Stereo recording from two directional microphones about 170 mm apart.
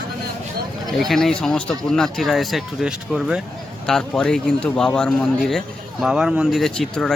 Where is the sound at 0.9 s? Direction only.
Centre (ahead or behind).